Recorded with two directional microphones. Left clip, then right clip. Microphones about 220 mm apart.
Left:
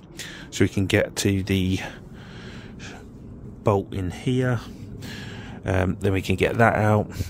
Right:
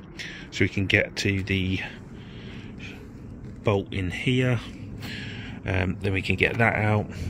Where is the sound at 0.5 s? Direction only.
25° left (ahead or behind).